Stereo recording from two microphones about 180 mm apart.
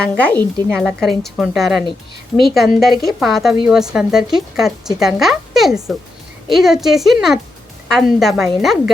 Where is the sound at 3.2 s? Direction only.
Centre (ahead or behind).